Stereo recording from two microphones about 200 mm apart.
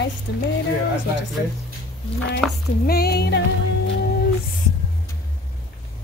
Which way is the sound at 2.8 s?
50° left (ahead or behind).